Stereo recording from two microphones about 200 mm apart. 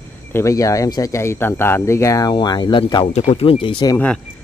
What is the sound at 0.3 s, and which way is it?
Speech, 15° left (ahead or behind).